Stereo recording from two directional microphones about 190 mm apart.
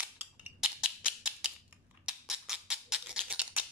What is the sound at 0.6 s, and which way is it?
Music, 5° right (ahead or behind).